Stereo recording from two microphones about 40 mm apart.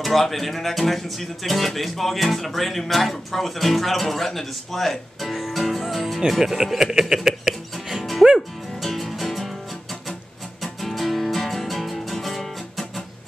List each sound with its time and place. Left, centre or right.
0.0 s speech: centre
7.2 s music: centre
10.6 s music: centre